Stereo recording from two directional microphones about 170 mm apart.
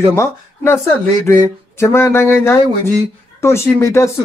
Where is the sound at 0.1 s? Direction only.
15° left (ahead or behind).